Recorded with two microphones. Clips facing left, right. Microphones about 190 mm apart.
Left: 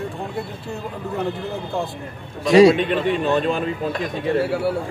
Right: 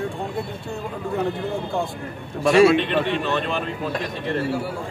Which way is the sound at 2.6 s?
40° left (ahead or behind).